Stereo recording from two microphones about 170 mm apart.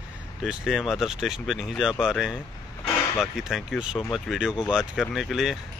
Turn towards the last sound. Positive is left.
turn(degrees=0)  # may be behind; listen again after turning